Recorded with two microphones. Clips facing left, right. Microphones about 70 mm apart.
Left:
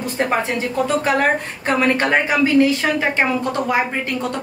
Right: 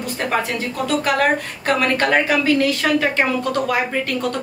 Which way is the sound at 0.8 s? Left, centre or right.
Left.